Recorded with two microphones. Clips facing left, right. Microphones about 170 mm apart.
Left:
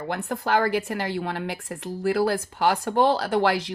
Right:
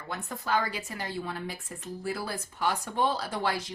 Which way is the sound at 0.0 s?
65° left (ahead or behind).